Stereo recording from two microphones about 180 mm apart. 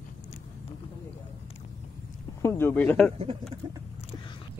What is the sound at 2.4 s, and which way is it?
Speech, 15° left (ahead or behind).